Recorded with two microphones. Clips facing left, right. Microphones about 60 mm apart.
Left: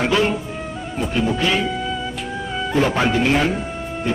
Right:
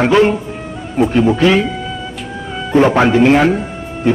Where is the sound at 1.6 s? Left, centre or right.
Centre.